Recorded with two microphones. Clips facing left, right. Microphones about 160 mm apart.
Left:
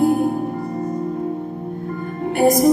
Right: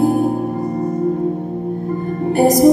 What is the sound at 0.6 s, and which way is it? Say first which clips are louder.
Music: right 5 dB; 35° right (ahead or behind).